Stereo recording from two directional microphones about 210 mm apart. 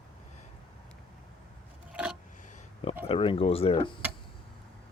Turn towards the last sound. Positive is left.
turn(degrees=25)  # may be behind; listen again after turning